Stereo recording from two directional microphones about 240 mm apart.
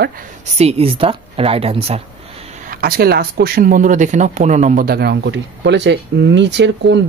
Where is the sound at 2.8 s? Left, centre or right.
Right.